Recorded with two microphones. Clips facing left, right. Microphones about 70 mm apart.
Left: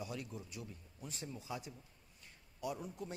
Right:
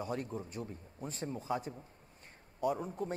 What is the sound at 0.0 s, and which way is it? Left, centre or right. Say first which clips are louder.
A man's voice: right 7 dB; right.